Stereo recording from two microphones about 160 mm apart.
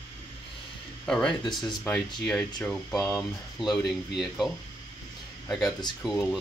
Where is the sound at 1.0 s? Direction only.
5° left (ahead or behind).